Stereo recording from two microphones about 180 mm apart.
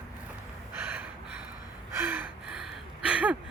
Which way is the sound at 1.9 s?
10° right (ahead or behind).